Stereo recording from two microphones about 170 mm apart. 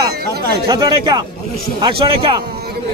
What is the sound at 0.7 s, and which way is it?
A man's voice, 20° right (ahead or behind).